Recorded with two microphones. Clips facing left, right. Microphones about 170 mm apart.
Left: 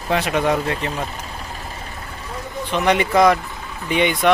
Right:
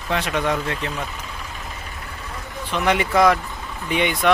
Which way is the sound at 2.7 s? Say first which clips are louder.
Left 2 dB; centre (ahead or behind).